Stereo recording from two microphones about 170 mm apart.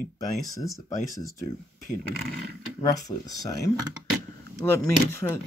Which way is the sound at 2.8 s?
20° left (ahead or behind).